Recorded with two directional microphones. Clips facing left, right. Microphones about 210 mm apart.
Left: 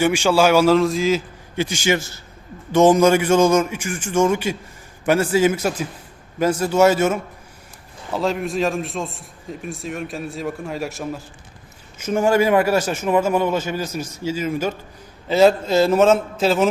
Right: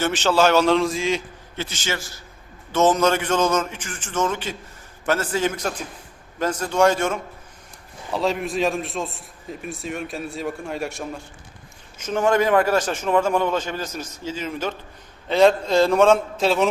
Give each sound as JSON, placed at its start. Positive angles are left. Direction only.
{"t": 0.0, "sound": "a man's voice", "side_deg": 10}
{"t": 1.5, "sound": "a man's voice", "side_deg": 10}
{"t": 2.0, "sound": "a man's voice", "side_deg": 25}
{"t": 2.7, "sound": "a man's voice", "side_deg": 10}